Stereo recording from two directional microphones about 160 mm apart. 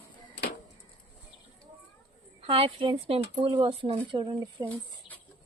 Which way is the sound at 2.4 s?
35° right (ahead or behind).